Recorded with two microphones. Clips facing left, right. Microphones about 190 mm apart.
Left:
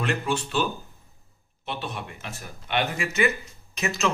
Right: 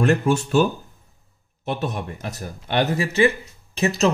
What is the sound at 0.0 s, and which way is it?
Speech, 45° right (ahead or behind).